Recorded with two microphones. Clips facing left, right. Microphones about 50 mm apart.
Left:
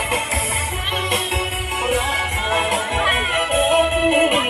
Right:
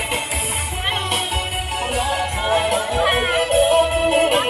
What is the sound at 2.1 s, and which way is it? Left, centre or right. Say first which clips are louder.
Music: right 1 dB; left.